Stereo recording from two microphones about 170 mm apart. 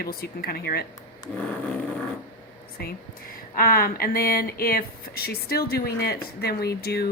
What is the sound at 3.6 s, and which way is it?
Speech, 60° left (ahead or behind).